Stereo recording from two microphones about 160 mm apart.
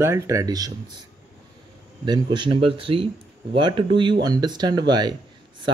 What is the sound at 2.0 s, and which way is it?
Speech, 25° right (ahead or behind).